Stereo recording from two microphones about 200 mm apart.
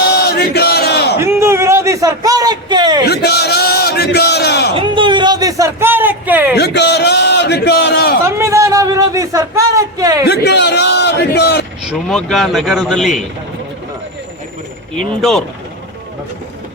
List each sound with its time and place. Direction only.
0.2 s battle cry: 55° left (ahead or behind)
1.2 s a man's voice: 10° right (ahead or behind)
3.1 s a sound: 55° left (ahead or behind)
4.7 s a sound: 25° right (ahead or behind); by 6.6 s 10° right (ahead or behind)
6.6 s a man's voice: 55° left (ahead or behind)
8.2 s a sound: 15° right (ahead or behind)
10.2 s a man's voice: 55° left (ahead or behind)
11.8 s speech: centre (ahead or behind)
14.9 s speech: centre (ahead or behind)